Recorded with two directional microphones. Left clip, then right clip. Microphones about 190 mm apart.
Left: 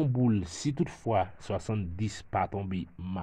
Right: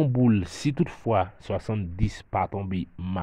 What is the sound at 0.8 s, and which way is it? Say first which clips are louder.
Speech: right 4 dB; 30° right (ahead or behind).